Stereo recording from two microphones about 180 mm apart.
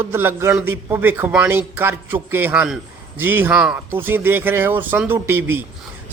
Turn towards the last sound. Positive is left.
turn(degrees=-10)  # may be behind; listen again after turning